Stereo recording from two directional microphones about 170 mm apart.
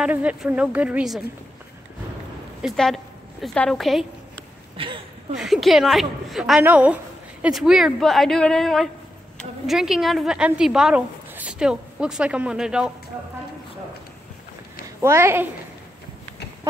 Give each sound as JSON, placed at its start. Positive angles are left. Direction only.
{"t": 0.0, "sound": "speech", "side_deg": -5}
{"t": 2.6, "sound": "a woman's voice", "side_deg": 0}
{"t": 4.7, "sound": "speech", "side_deg": -30}
{"t": 5.3, "sound": "a woman's voice", "side_deg": 0}
{"t": 15.0, "sound": "speech", "side_deg": -15}